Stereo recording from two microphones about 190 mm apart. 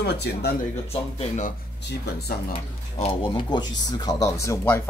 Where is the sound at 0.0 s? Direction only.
60° left (ahead or behind).